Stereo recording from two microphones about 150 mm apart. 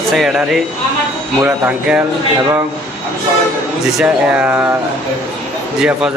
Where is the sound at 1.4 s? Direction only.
15° right (ahead or behind).